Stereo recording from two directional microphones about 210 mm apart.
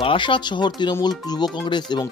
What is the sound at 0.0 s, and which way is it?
Speech, 25° left (ahead or behind).